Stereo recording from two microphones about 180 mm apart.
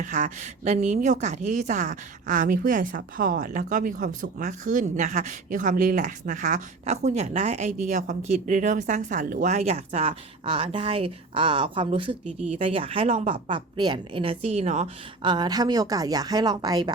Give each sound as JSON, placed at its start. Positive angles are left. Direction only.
{"t": 0.0, "sound": "a woman's voice", "side_deg": -45}
{"t": 15.2, "sound": "speech", "side_deg": -25}